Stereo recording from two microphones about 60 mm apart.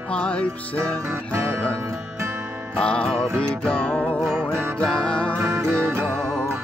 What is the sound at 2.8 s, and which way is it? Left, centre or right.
Music, centre.